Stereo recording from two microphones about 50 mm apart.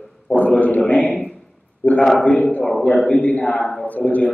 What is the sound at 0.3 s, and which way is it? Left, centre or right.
A man's voice, left.